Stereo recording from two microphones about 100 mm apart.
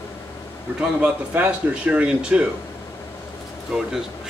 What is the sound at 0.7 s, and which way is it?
Speech, 15° right (ahead or behind).